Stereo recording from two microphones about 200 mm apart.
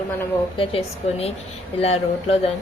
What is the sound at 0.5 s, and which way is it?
A woman's voice, 25° left (ahead or behind).